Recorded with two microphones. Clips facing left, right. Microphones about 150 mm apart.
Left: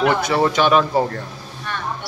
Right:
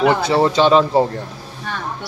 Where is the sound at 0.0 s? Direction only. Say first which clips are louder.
Right 2 dB; 25° right (ahead or behind).